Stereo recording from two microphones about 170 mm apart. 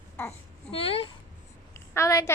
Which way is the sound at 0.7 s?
35° left (ahead or behind).